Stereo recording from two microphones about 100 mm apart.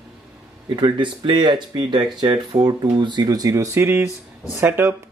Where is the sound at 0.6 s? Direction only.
50° right (ahead or behind); by 4.9 s 25° right (ahead or behind).